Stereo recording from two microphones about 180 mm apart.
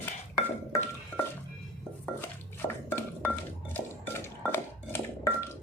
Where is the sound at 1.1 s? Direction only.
10° left (ahead or behind).